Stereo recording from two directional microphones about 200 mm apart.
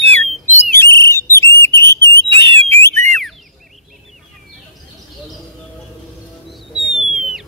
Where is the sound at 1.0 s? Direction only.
15° left (ahead or behind).